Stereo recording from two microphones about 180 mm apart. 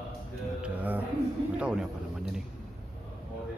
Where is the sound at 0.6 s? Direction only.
10° right (ahead or behind).